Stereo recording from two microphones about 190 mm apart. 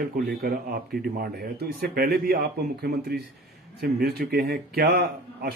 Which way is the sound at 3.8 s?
55° right (ahead or behind).